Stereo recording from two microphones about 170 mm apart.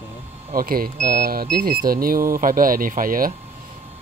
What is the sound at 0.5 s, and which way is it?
Speech, 60° right (ahead or behind).